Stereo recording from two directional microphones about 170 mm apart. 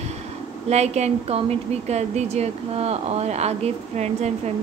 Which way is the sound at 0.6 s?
40° right (ahead or behind).